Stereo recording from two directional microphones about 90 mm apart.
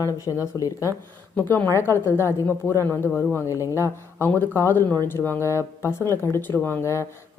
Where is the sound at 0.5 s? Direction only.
20° right (ahead or behind).